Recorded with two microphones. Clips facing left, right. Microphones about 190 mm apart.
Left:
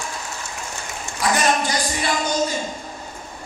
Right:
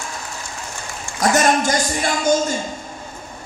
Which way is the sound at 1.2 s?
45° right (ahead or behind).